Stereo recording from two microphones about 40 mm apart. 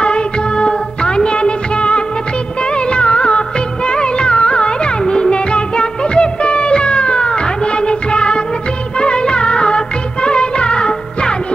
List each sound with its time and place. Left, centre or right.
0.0 s music of bollywood: left